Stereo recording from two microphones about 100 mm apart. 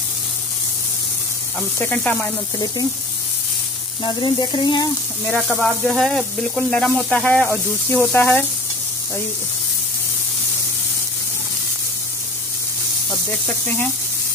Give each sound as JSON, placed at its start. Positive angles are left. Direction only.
{"t": 1.6, "sound": "sizzle", "side_deg": 15}
{"t": 4.0, "sound": "speech", "side_deg": 45}
{"t": 5.3, "sound": "sizzle", "side_deg": 5}
{"t": 8.0, "sound": "speech", "side_deg": 15}